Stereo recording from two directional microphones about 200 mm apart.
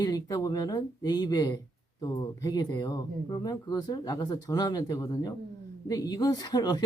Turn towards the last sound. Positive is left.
turn(degrees=20)  # may be behind; listen again after turning